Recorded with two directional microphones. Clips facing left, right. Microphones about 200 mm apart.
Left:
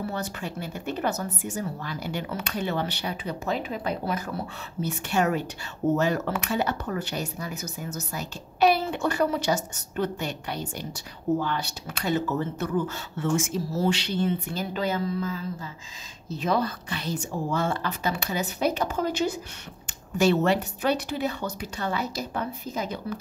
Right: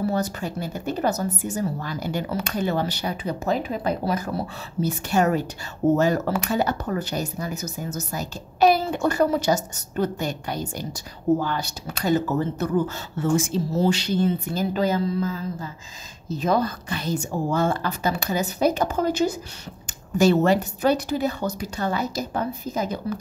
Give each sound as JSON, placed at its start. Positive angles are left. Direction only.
{"t": 0.1, "sound": "speech", "side_deg": -40}
{"t": 13.9, "sound": "speech", "side_deg": -45}
{"t": 16.3, "sound": "a woman's voice", "side_deg": -45}